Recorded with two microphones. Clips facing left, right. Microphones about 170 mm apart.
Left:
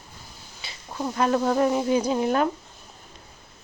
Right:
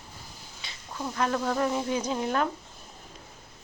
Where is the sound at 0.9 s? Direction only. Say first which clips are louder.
Left 5 dB; 25° left (ahead or behind).